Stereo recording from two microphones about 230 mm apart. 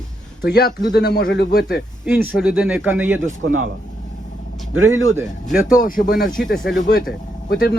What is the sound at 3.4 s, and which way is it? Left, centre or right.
Speech, right.